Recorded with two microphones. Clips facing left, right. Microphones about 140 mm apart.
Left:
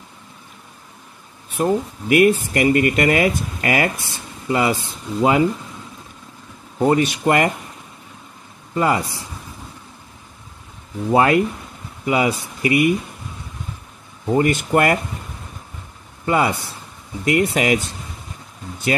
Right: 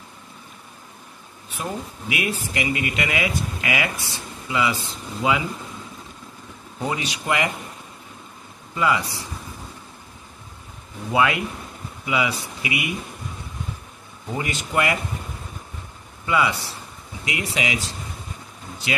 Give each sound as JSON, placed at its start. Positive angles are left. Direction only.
{"t": 1.5, "sound": "speech", "side_deg": 50}
{"t": 6.8, "sound": "speech", "side_deg": 50}
{"t": 8.7, "sound": "speech", "side_deg": 45}
{"t": 11.1, "sound": "speech", "side_deg": 45}
{"t": 14.3, "sound": "speech", "side_deg": 50}
{"t": 16.3, "sound": "speech", "side_deg": 45}